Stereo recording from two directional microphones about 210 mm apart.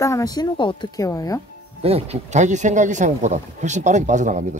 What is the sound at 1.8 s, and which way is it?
Speech, 30° right (ahead or behind).